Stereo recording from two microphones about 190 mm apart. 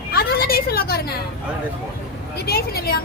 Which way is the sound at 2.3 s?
55° left (ahead or behind).